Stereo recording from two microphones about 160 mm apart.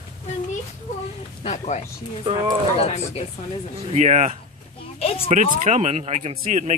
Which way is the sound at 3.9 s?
45° right (ahead or behind).